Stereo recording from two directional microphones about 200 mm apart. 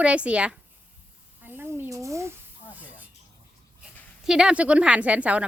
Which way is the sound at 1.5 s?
15° right (ahead or behind).